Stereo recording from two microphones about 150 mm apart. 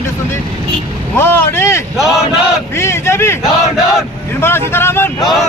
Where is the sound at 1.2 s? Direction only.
15° left (ahead or behind).